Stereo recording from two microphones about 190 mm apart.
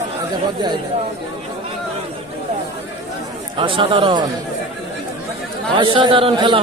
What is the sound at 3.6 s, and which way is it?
Speech, 25° right (ahead or behind).